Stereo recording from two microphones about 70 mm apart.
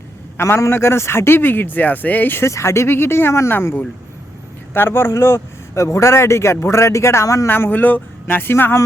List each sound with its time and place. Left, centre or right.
0.3 s a man's voice: left
2.4 s a man's voice: left
7.4 s speech: left